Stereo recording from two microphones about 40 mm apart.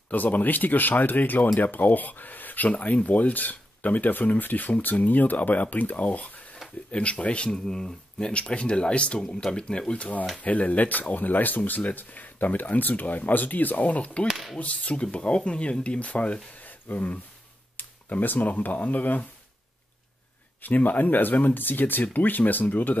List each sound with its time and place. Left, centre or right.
0.1 s speech: left
6.9 s speech: left
8.3 s speech: left
9.2 s speech: centre
9.6 s speech: left
10.4 s speech: left
14.3 s a sound: centre
14.6 s speech: left
16.6 s a sound: left
17.7 s speech: left
20.6 s speech: left